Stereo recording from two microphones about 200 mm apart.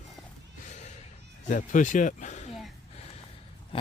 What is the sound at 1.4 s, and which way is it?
A man's voice, 40° left (ahead or behind).